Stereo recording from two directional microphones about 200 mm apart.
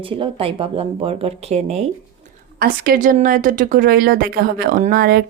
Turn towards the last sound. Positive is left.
turn(degrees=-50)  # may be behind; listen again after turning